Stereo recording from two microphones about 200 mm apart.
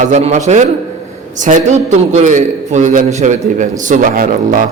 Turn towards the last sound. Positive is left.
turn(degrees=-40)  # may be behind; listen again after turning